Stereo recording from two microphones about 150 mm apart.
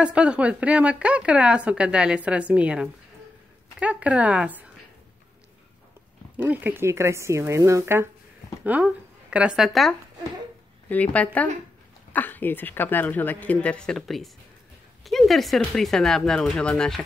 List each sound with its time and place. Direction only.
0.0 s speech: 5° right (ahead or behind)
6.3 s speech: 10° right (ahead or behind)
10.9 s a woman's voice: 10° left (ahead or behind)